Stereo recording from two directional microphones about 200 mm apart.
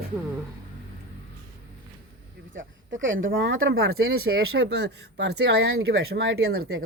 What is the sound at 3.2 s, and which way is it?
Speech, 75° right (ahead or behind).